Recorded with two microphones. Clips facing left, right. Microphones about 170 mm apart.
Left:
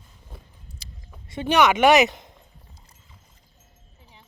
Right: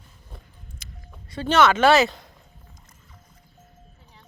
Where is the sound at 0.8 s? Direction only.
35° left (ahead or behind).